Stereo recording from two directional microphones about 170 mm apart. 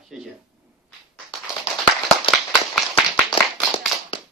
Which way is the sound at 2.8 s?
Centre (ahead or behind).